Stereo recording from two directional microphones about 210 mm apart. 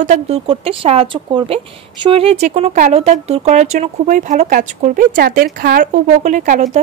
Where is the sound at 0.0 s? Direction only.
30° right (ahead or behind).